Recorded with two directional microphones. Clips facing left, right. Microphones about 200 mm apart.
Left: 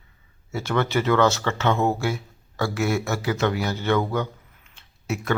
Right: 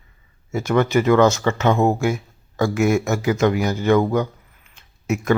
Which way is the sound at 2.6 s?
15° right (ahead or behind).